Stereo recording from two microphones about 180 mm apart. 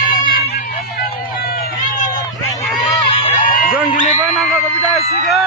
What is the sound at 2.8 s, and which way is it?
Crowd, 35° left (ahead or behind).